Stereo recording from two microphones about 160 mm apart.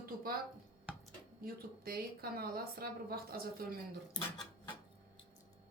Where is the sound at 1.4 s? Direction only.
70° right (ahead or behind).